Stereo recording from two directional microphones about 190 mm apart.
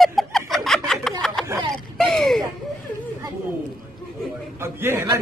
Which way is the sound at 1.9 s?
Centre (ahead or behind).